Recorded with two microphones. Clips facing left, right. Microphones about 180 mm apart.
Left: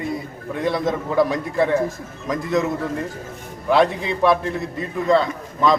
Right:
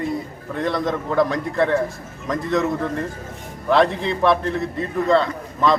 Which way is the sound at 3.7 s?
5° left (ahead or behind).